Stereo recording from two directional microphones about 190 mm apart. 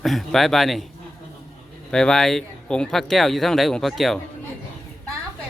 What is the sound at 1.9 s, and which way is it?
Speech, 5° left (ahead or behind).